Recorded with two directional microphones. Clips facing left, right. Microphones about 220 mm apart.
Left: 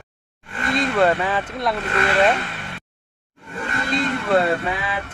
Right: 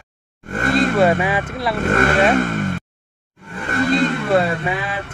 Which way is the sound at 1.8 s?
50° right (ahead or behind).